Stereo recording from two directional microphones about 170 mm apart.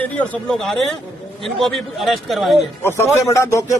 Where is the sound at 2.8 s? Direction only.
15° left (ahead or behind).